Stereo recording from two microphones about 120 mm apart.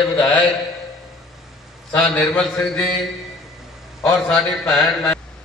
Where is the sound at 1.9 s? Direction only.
5° left (ahead or behind).